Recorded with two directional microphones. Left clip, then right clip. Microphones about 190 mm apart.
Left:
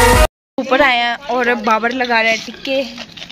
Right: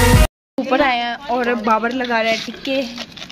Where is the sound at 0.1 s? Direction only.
5° left (ahead or behind).